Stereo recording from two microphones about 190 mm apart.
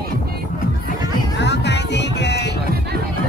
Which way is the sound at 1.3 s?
65° left (ahead or behind).